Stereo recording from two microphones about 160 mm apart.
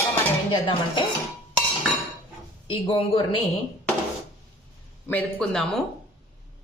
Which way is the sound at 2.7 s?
35° left (ahead or behind).